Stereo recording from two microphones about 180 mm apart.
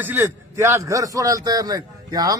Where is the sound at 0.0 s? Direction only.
10° right (ahead or behind).